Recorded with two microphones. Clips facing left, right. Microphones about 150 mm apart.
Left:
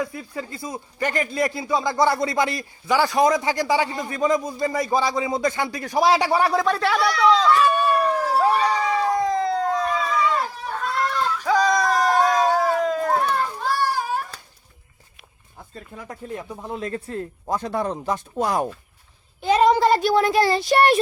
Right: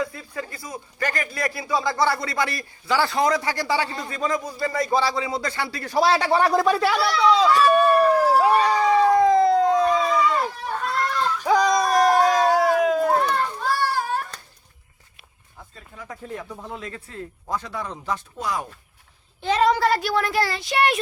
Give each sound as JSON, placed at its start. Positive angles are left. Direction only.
{"t": 0.0, "sound": "a man's voice", "side_deg": 20}
{"t": 6.4, "sound": "speech", "side_deg": 0}
{"t": 8.4, "sound": "a sound", "side_deg": -5}
{"t": 9.3, "sound": "howl", "side_deg": -15}
{"t": 10.4, "sound": "children playing", "side_deg": 0}
{"t": 11.4, "sound": "a sound", "side_deg": -15}
{"t": 12.5, "sound": "cat", "side_deg": -10}
{"t": 13.1, "sound": "children playing", "side_deg": 10}
{"t": 16.3, "sound": "speech", "side_deg": 20}
{"t": 16.8, "sound": "speech", "side_deg": 45}
{"t": 17.9, "sound": "speech", "side_deg": 15}
{"t": 18.3, "sound": "speech", "side_deg": 55}
{"t": 19.4, "sound": "a man's voice", "side_deg": 15}
{"t": 20.6, "sound": "a child's voice", "side_deg": 35}